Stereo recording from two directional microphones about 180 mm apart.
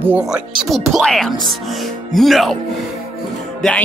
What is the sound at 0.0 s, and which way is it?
Speech, 5° right (ahead or behind).